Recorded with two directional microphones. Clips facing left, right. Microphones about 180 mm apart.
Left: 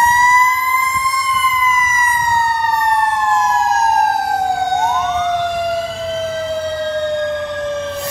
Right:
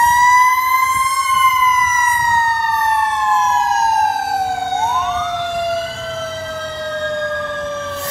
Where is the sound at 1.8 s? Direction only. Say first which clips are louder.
Right 1 dB; 10° left (ahead or behind).